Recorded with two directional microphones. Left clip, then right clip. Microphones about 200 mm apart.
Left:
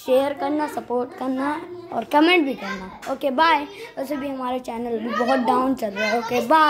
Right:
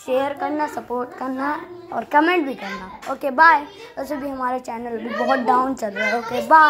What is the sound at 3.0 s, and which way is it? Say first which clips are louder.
Speech: right 4 dB; 10° left (ahead or behind).